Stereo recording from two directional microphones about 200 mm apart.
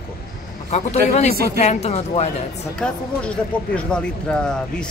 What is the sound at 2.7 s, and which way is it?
Speech, 5° left (ahead or behind).